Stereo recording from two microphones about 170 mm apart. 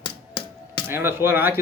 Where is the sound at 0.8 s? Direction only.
15° right (ahead or behind).